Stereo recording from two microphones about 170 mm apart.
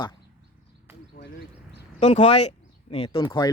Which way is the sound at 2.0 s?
40° left (ahead or behind).